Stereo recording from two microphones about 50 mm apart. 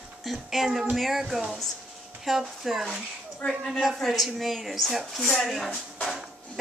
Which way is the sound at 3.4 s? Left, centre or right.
Left.